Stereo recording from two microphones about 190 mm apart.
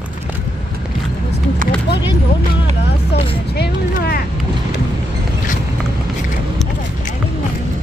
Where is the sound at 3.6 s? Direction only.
55° left (ahead or behind).